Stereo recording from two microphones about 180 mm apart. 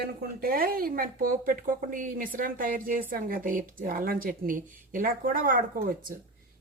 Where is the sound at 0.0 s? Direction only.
55° right (ahead or behind).